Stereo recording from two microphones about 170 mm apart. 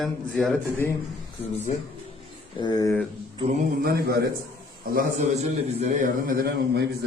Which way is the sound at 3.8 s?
65° right (ahead or behind).